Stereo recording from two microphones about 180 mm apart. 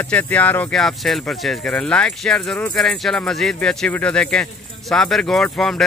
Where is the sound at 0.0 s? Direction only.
10° left (ahead or behind).